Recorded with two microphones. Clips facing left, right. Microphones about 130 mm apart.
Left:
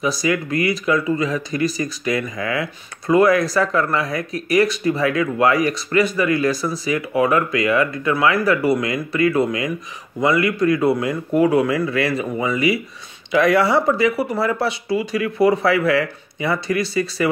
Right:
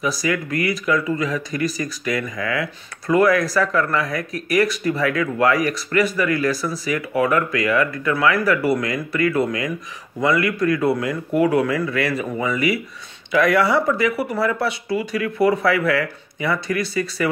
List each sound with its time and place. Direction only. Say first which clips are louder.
0.0 s speech: left 2 dB; 25° left (ahead or behind)